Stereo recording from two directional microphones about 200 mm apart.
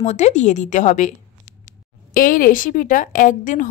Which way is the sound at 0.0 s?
35° left (ahead or behind).